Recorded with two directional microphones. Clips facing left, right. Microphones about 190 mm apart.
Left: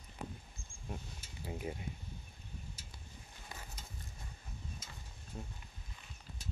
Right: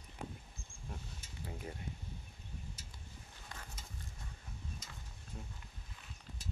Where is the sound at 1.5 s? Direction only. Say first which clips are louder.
Left 5 dB; 15° left (ahead or behind).